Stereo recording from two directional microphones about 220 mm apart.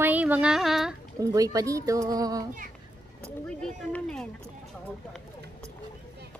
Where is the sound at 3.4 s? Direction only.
5° left (ahead or behind).